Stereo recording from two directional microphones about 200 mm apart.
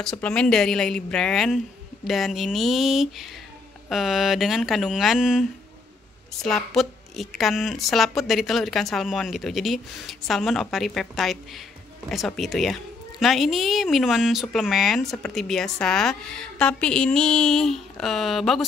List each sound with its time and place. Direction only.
0.0 s a woman's voice: 5° left (ahead or behind)